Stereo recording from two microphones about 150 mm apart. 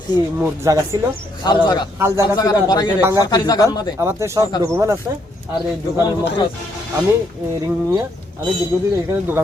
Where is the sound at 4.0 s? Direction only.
20° right (ahead or behind).